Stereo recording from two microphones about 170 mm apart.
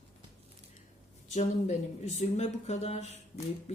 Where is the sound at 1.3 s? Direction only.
40° left (ahead or behind).